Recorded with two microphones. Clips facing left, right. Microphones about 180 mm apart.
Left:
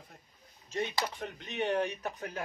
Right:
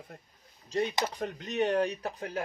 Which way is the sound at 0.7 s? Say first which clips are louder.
Right 4 dB; 40° right (ahead or behind).